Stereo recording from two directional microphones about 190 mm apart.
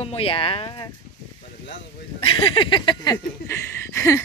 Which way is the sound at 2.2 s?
30° left (ahead or behind).